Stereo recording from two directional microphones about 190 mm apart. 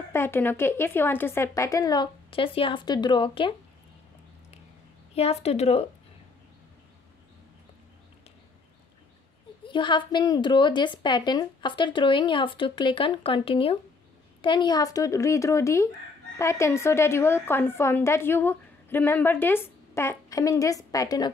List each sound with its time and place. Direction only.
0.1 s a woman's voice: 10° left (ahead or behind)
5.1 s a woman's voice: 35° left (ahead or behind)
9.7 s a woman's voice: 25° left (ahead or behind)